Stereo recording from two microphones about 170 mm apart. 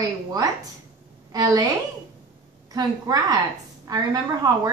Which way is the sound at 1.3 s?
20° right (ahead or behind).